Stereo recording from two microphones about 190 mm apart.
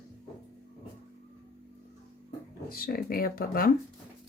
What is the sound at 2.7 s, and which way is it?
Speech, 50° left (ahead or behind).